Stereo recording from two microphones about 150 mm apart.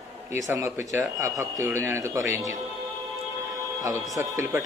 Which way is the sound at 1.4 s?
20° right (ahead or behind).